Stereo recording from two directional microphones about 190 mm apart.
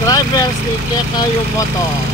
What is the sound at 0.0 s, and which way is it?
Vehicle, 20° left (ahead or behind).